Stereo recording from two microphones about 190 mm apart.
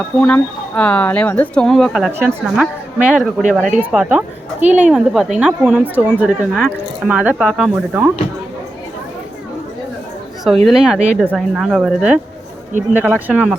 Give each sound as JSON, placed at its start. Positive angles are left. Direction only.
{"t": 0.2, "sound": "speech", "side_deg": 5}
{"t": 4.6, "sound": "speech", "side_deg": -40}
{"t": 4.9, "sound": "speech", "side_deg": -5}
{"t": 10.7, "sound": "speech", "side_deg": 0}